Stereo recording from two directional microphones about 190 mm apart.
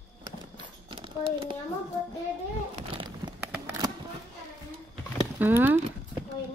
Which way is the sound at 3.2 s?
20° right (ahead or behind).